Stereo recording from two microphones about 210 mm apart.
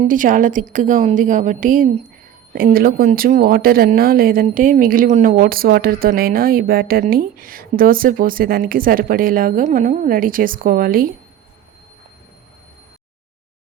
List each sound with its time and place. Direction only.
0.0 s a woman's voice: 40° right (ahead or behind)